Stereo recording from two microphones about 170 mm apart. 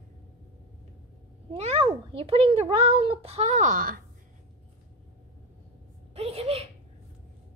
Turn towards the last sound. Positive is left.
turn(degrees=-35)  # may be behind; listen again after turning